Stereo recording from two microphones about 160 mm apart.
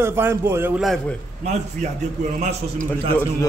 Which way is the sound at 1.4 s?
45° right (ahead or behind).